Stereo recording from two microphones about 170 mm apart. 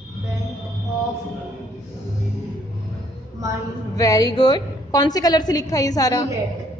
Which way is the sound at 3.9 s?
20° left (ahead or behind).